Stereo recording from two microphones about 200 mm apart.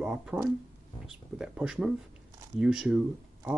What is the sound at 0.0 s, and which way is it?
Speech, 5° right (ahead or behind).